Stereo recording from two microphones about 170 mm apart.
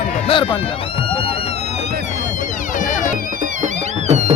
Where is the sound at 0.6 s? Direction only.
30° left (ahead or behind).